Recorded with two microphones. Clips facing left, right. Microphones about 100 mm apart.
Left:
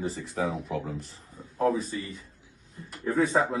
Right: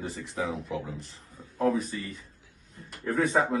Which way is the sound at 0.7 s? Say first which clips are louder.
Left 2 dB; centre (ahead or behind).